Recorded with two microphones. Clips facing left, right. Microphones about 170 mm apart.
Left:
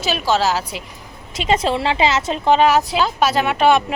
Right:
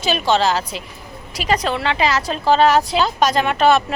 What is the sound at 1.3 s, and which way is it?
A woman's voice, 25° left (ahead or behind).